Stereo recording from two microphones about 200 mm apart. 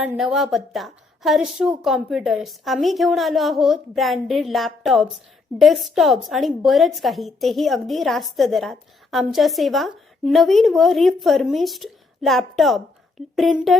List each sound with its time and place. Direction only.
0.0 s a woman's voice: 5° right (ahead or behind)